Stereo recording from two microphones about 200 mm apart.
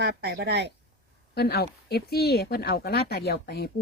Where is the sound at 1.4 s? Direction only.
55° left (ahead or behind).